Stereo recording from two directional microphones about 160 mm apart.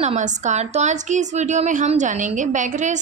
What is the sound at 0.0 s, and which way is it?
A woman's voice, 45° right (ahead or behind).